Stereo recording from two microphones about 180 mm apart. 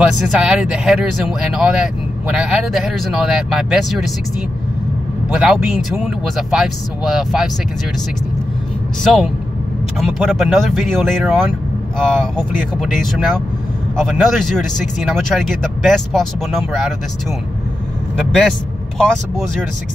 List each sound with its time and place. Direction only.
0.0 s speech: centre (ahead or behind)
5.3 s speech: centre (ahead or behind)
9.0 s speech: centre (ahead or behind)
18.1 s speech: centre (ahead or behind)